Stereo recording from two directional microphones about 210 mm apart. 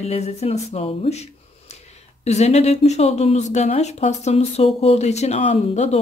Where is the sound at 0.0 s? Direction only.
30° left (ahead or behind).